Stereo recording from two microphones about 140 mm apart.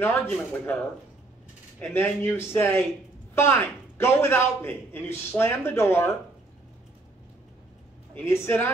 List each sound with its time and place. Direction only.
0.0 s a man's voice: 15° left (ahead or behind)
2.0 s a man's voice: 15° left (ahead or behind)
8.1 s a man's voice: 15° left (ahead or behind)